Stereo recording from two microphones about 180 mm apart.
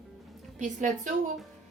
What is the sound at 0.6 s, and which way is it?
Speech, 45° right (ahead or behind).